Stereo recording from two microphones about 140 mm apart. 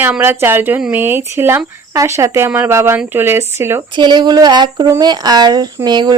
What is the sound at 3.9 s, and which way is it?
Speech, 35° right (ahead or behind).